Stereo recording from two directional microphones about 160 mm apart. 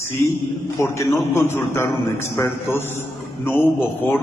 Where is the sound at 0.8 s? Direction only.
15° left (ahead or behind).